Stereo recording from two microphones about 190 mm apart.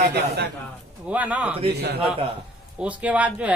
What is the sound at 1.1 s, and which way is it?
Speech, 5° right (ahead or behind).